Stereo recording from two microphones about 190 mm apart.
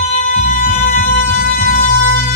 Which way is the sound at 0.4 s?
45° left (ahead or behind).